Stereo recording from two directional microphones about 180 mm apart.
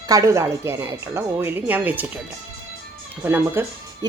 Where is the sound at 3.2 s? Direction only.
10° right (ahead or behind).